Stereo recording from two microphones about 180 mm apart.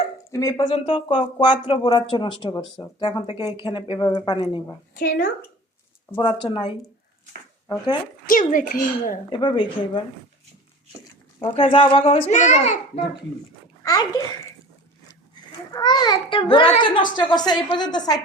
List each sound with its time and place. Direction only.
0.3 s a woman's voice: 20° left (ahead or behind)
4.9 s a woman's voice: 50° left (ahead or behind)
6.1 s a woman's voice: 25° left (ahead or behind)
8.3 s a woman's voice: 50° left (ahead or behind)
9.3 s a woman's voice: 25° left (ahead or behind)
11.4 s a child's voice: 30° left (ahead or behind)
15.7 s a woman's voice: 25° left (ahead or behind)